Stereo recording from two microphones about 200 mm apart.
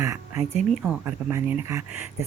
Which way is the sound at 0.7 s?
Centre (ahead or behind).